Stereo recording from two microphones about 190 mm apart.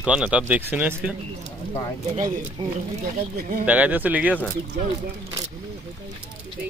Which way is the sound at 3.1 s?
40° right (ahead or behind).